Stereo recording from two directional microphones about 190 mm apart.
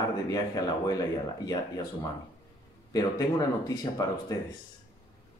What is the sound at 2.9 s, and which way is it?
Speech, 20° left (ahead or behind).